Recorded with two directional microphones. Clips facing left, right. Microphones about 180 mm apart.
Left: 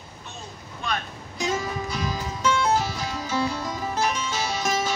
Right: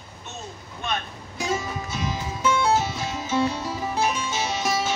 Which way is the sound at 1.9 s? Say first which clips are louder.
Even; 25° right (ahead or behind).